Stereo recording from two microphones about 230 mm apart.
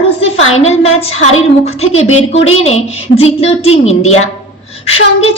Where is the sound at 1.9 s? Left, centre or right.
Left.